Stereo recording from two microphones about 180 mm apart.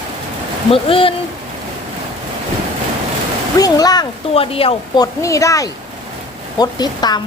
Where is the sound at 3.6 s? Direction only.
20° left (ahead or behind).